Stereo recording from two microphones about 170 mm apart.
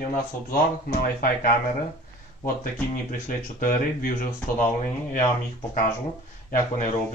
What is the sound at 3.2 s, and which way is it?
Speech, 50° left (ahead or behind).